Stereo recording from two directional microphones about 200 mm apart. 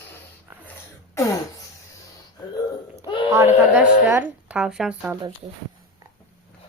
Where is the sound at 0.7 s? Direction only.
15° left (ahead or behind).